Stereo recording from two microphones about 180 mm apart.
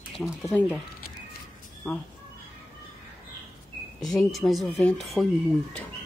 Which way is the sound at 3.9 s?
Centre (ahead or behind).